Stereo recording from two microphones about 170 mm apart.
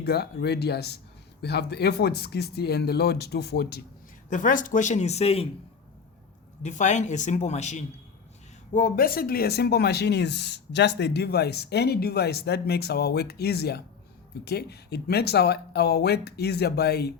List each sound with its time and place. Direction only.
0.0 s speech: 75° left (ahead or behind)
4.3 s a man's voice: 50° left (ahead or behind)
6.6 s a man's voice: 45° left (ahead or behind)
8.7 s speech: 55° left (ahead or behind); by 17.2 s 70° left (ahead or behind)